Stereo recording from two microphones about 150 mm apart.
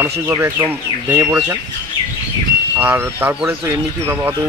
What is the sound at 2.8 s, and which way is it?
Speech, 15° right (ahead or behind).